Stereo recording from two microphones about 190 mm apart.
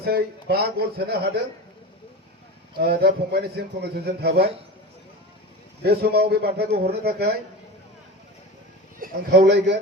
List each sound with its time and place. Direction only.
0.0 s a man's voice: 55° right (ahead or behind)
2.7 s a man's voice: 55° right (ahead or behind)
5.8 s a man's voice: 55° right (ahead or behind)
9.0 s a man's voice: 60° right (ahead or behind)